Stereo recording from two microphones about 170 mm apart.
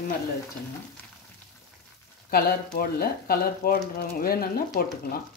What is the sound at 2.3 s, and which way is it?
Speech, 65° left (ahead or behind).